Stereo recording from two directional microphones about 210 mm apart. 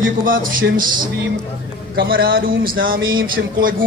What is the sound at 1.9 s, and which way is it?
Speech, 45° right (ahead or behind).